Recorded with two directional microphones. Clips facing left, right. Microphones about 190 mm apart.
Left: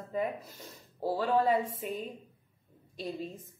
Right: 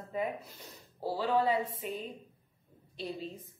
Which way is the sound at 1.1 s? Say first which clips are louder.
Left 1 dB; 50° left (ahead or behind).